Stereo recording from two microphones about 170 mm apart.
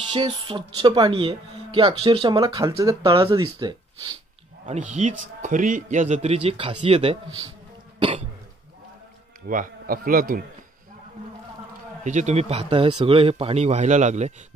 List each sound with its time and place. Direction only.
0.1 s speech: 30° right (ahead or behind)
3.1 s a man's voice: 30° right (ahead or behind)
4.9 s a man's voice: 45° right (ahead or behind)
9.5 s speech: 55° right (ahead or behind)
12.0 s a man's voice: 45° right (ahead or behind)